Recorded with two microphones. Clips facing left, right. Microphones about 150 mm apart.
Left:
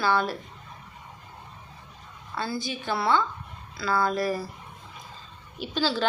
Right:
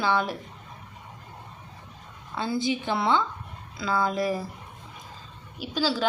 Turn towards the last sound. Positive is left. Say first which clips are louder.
# even
turn(degrees=-10)  # may be behind; listen again after turning